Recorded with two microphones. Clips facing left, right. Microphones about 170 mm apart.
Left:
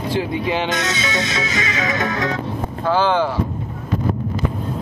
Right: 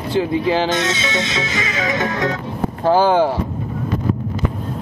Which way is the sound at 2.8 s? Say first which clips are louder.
Right 4 dB; 40° right (ahead or behind).